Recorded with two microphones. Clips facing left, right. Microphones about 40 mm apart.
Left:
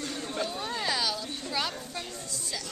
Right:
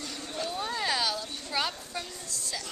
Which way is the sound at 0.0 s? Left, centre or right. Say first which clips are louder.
Left 3 dB; left.